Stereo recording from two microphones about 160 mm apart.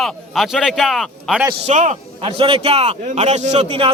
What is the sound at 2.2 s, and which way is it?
A man's voice, 35° right (ahead or behind).